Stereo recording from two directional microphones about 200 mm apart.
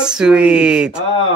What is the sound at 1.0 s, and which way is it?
Speech, 25° left (ahead or behind).